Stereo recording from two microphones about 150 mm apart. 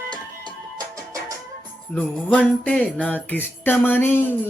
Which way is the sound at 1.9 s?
10° left (ahead or behind).